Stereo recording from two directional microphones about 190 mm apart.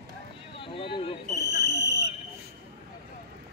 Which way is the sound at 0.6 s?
30° left (ahead or behind).